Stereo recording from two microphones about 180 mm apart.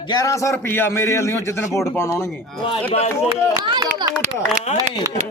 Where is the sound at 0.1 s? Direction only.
20° left (ahead or behind).